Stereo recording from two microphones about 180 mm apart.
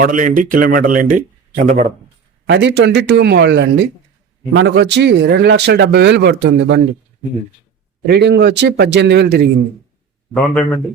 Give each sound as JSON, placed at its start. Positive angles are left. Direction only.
{"t": 0.0, "sound": "a man's voice", "side_deg": -45}
{"t": 2.5, "sound": "speech", "side_deg": -70}
{"t": 8.0, "sound": "speech", "side_deg": -65}
{"t": 10.3, "sound": "a man's voice", "side_deg": 5}